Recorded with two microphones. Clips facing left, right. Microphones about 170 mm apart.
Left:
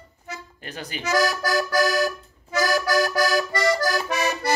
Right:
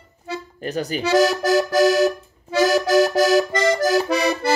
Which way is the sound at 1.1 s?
25° right (ahead or behind).